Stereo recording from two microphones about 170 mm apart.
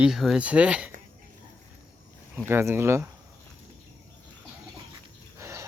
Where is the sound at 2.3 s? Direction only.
15° right (ahead or behind).